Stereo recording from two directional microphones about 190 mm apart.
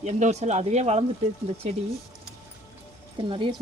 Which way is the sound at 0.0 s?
35° right (ahead or behind).